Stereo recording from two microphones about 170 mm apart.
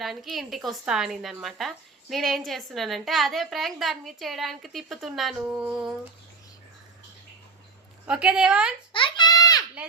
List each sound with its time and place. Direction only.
0.0 s a woman's voice: centre (ahead or behind)
8.0 s a woman's voice: 5° right (ahead or behind)
8.9 s a sound: 30° left (ahead or behind)